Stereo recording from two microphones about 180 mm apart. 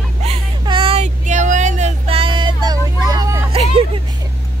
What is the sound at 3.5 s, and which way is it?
Vehicle, 35° right (ahead or behind).